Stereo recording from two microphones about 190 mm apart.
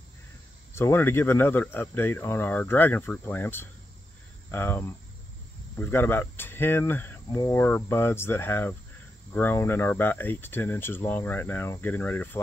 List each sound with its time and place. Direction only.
0.7 s speech: 15° left (ahead or behind)